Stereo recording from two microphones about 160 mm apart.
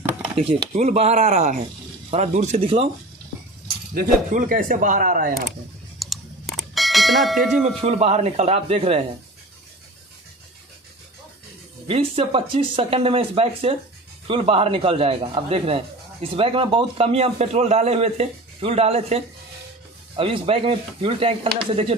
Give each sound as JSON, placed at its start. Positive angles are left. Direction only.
{"t": 0.4, "sound": "a man's voice", "side_deg": -40}
{"t": 3.9, "sound": "speech", "side_deg": -60}
{"t": 5.9, "sound": "a sound", "side_deg": 0}
{"t": 7.6, "sound": "a man's voice", "side_deg": -40}
{"t": 11.9, "sound": "a man's voice", "side_deg": -35}